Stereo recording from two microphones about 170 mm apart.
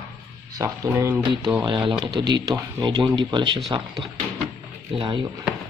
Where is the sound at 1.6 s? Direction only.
30° right (ahead or behind).